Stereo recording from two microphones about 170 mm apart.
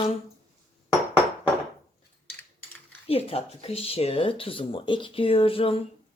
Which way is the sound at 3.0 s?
35° left (ahead or behind).